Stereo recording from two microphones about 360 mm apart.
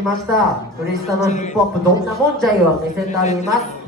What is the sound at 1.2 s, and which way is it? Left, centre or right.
Speech, centre.